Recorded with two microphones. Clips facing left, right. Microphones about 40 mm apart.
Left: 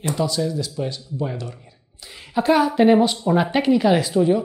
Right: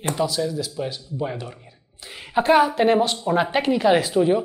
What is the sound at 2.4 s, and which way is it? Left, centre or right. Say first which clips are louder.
Speech: even; right.